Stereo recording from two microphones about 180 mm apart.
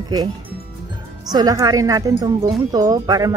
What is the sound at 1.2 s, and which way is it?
Speech, 20° right (ahead or behind).